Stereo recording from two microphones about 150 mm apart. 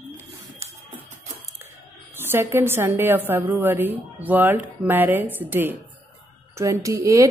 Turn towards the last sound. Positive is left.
turn(degrees=-20)  # may be behind; listen again after turning